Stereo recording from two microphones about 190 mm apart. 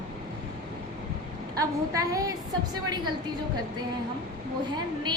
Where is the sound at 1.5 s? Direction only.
20° right (ahead or behind).